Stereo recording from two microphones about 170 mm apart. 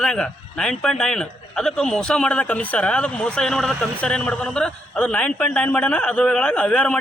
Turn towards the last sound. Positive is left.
turn(degrees=5)  # may be behind; listen again after turning